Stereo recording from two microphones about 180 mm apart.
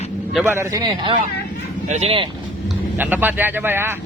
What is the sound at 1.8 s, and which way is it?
Speech, 40° right (ahead or behind).